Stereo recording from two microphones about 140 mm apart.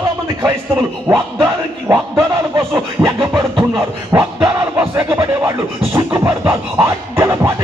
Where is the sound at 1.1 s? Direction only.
20° right (ahead or behind).